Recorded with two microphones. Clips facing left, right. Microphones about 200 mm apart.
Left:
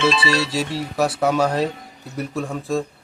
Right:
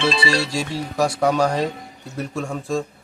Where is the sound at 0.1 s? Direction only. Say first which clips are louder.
Left 1 dB; 25° right (ahead or behind).